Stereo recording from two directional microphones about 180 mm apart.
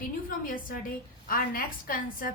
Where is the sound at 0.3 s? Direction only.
50° left (ahead or behind).